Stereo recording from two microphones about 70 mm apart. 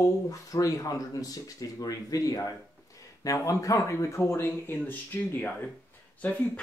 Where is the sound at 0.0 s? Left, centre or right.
Left.